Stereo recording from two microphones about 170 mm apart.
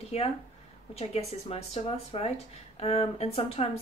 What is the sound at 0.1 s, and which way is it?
A woman's voice, 40° left (ahead or behind).